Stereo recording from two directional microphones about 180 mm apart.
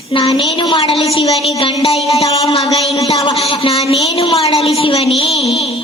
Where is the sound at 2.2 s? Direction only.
35° left (ahead or behind).